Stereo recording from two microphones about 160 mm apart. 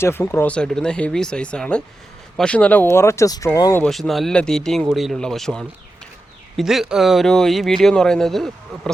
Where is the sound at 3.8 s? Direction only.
Centre (ahead or behind).